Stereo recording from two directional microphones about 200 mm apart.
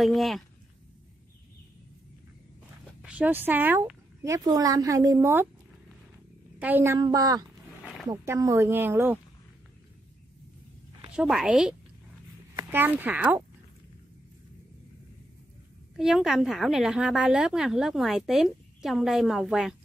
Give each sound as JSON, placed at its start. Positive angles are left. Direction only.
{"t": 0.0, "sound": "a woman's voice", "side_deg": 0}
{"t": 3.0, "sound": "speech", "side_deg": -5}
{"t": 6.6, "sound": "speech", "side_deg": -10}
{"t": 7.8, "sound": "wild animals", "side_deg": 0}
{"t": 8.1, "sound": "speech", "side_deg": -15}
{"t": 11.1, "sound": "a woman's voice", "side_deg": -5}
{"t": 16.0, "sound": "a woman's voice", "side_deg": 0}